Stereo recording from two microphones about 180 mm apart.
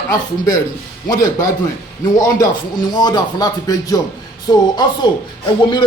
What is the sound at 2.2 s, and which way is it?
Speech, 20° left (ahead or behind).